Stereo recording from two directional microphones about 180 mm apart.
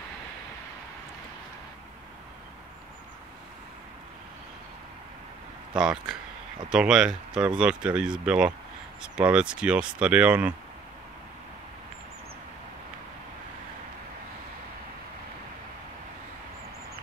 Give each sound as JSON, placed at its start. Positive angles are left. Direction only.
{"t": 5.8, "sound": "speech", "side_deg": -5}